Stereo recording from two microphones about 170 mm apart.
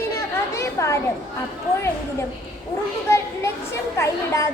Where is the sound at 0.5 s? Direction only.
15° left (ahead or behind).